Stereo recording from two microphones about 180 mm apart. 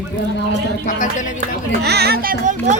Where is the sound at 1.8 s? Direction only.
65° right (ahead or behind); by 2.8 s 45° right (ahead or behind).